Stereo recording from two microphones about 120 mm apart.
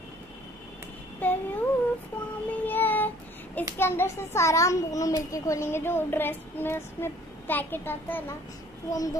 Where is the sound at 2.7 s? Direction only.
15° left (ahead or behind).